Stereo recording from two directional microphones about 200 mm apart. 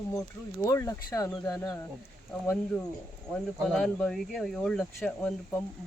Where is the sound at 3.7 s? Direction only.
5° left (ahead or behind).